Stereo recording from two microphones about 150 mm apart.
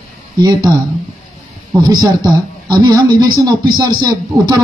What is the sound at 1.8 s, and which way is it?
A man's voice, 25° right (ahead or behind).